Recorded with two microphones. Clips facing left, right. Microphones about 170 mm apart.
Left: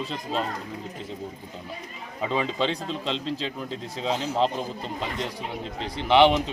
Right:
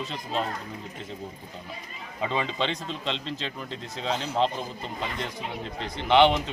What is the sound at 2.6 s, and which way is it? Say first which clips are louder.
Speech: left 3 dB; 5° left (ahead or behind).